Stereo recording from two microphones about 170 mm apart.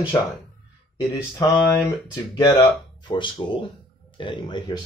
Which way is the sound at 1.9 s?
20° left (ahead or behind).